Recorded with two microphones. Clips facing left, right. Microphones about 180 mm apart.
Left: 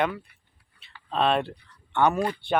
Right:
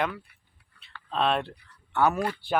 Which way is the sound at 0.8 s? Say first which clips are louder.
Left 2 dB; 5° left (ahead or behind).